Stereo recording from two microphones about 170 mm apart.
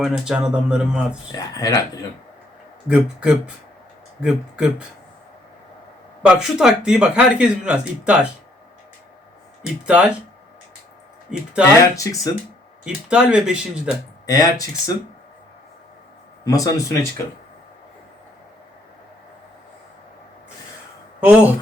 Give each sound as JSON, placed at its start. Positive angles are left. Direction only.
{"t": 0.0, "sound": "speech", "side_deg": -5}
{"t": 1.3, "sound": "speech", "side_deg": 20}
{"t": 2.9, "sound": "speech", "side_deg": -5}
{"t": 6.2, "sound": "speech", "side_deg": -5}
{"t": 9.8, "sound": "speech", "side_deg": -5}
{"t": 11.3, "sound": "speech", "side_deg": -5}
{"t": 11.9, "sound": "speech", "side_deg": 20}
{"t": 12.8, "sound": "speech", "side_deg": -5}
{"t": 14.3, "sound": "speech", "side_deg": 20}
{"t": 16.4, "sound": "speech", "side_deg": 20}
{"t": 21.2, "sound": "speech", "side_deg": -10}